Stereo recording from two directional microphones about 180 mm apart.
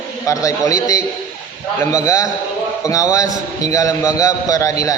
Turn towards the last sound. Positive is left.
turn(degrees=20)  # may be behind; listen again after turning